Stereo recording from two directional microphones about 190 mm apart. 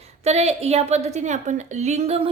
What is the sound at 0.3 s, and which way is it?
A woman's voice, 35° right (ahead or behind).